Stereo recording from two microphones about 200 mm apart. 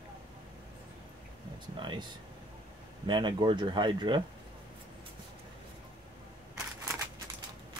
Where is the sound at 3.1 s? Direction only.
25° right (ahead or behind).